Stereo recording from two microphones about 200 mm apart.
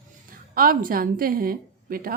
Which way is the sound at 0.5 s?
45° right (ahead or behind).